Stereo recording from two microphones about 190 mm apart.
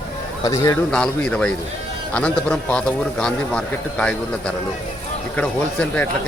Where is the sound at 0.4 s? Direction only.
15° left (ahead or behind).